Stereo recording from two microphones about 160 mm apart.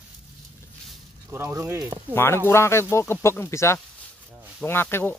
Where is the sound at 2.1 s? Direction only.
15° left (ahead or behind).